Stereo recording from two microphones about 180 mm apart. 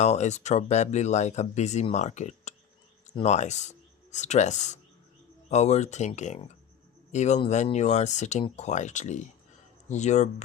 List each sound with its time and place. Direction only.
0.0 s speech: 40° left (ahead or behind)